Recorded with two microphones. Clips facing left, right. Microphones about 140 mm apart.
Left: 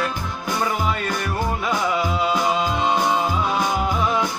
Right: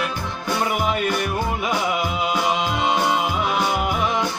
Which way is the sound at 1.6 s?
15° right (ahead or behind).